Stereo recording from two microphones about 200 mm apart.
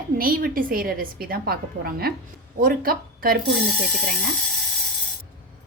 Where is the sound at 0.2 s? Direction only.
45° right (ahead or behind).